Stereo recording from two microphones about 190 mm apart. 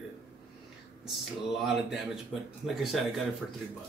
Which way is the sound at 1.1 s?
Centre (ahead or behind).